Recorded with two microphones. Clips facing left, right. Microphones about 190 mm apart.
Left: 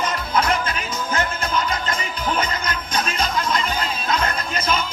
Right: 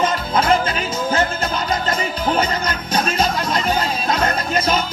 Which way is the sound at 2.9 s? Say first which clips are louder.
Right 5 dB; 40° right (ahead or behind).